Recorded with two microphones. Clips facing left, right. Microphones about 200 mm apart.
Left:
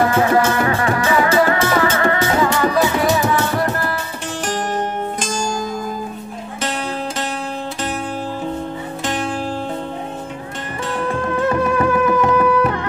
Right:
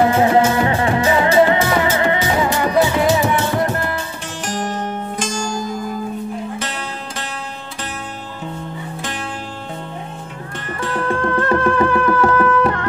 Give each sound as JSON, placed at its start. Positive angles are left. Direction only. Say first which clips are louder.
{"t": 0.0, "sound": "music", "louder": "right 2 dB", "side_deg": -20}
{"t": 11.2, "sound": "music", "louder": "even", "side_deg": 10}